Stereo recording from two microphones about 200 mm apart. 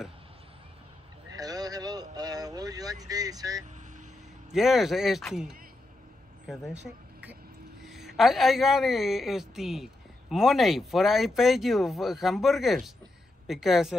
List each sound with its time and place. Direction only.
1.3 s vehicle: 20° right (ahead or behind)
3.1 s speech: 20° right (ahead or behind)
4.5 s speech: centre (ahead or behind)
7.8 s a sound: centre (ahead or behind)
8.2 s speech: centre (ahead or behind)